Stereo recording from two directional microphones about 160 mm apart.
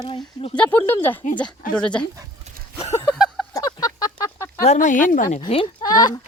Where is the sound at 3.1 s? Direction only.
Centre (ahead or behind).